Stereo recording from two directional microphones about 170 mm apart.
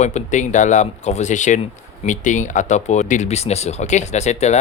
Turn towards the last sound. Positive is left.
turn(degrees=40)  # may be behind; listen again after turning